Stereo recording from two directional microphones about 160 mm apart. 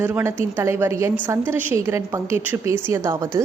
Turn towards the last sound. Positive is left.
turn(degrees=-20)  # may be behind; listen again after turning